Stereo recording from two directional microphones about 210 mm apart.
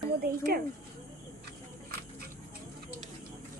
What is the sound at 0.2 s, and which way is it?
Speech, 45° right (ahead or behind).